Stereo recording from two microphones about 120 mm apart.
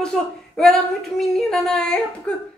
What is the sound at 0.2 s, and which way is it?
A woman's voice, 5° left (ahead or behind).